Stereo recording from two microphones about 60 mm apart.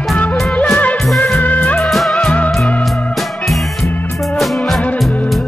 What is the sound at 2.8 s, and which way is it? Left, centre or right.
Music, centre.